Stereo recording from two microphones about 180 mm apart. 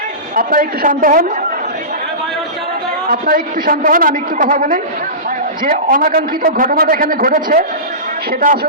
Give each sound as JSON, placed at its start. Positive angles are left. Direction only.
{"t": 0.3, "sound": "a man's voice", "side_deg": -50}
{"t": 3.1, "sound": "a man's voice", "side_deg": -50}